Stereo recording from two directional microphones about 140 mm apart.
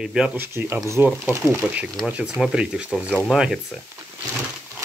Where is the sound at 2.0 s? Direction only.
10° right (ahead or behind).